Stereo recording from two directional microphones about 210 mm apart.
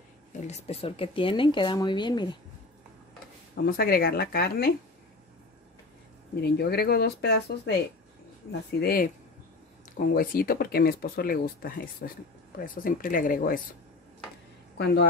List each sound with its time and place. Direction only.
0.5 s speech: 30° left (ahead or behind)
3.6 s speech: 45° left (ahead or behind)
6.4 s speech: 50° left (ahead or behind)
14.8 s speech: 55° left (ahead or behind)